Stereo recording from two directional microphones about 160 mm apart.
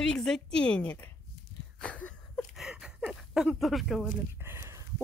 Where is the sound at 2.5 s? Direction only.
5° right (ahead or behind).